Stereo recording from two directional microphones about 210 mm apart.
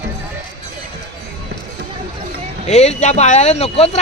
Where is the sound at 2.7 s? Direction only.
30° left (ahead or behind).